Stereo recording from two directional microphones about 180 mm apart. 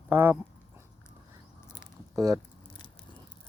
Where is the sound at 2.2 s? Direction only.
20° right (ahead or behind).